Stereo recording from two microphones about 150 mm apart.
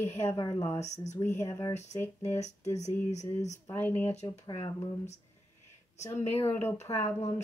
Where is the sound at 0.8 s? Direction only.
50° left (ahead or behind).